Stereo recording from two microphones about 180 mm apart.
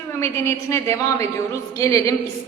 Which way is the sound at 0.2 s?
15° left (ahead or behind).